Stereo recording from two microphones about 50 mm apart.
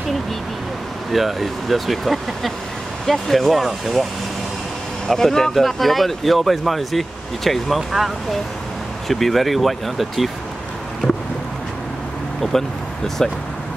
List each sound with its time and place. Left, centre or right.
1.1 s speech: centre
5.0 s speech: centre
11.0 s a sound: centre
12.5 s speech: centre